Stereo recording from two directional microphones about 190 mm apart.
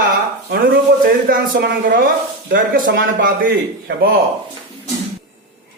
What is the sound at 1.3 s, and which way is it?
Speech, 50° right (ahead or behind).